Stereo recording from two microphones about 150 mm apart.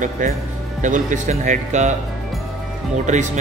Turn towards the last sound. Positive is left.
turn(degrees=-55)  # may be behind; listen again after turning